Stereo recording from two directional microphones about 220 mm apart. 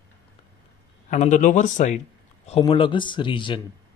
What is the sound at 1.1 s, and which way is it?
Speech, 35° left (ahead or behind).